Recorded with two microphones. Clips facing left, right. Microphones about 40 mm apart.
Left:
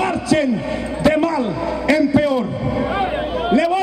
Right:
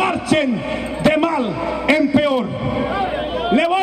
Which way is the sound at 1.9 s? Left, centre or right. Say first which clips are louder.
Even; right.